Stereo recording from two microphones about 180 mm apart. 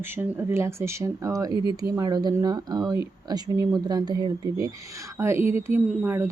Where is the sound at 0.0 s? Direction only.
10° right (ahead or behind).